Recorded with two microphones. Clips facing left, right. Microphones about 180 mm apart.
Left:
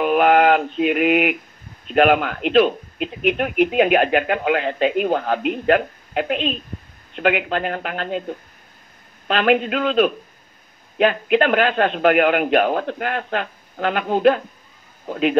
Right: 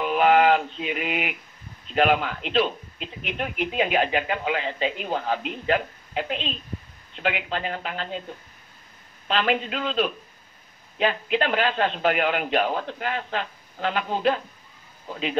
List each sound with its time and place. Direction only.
0.0 s mantra: 55° left (ahead or behind)
1.9 s speech: 55° left (ahead or behind)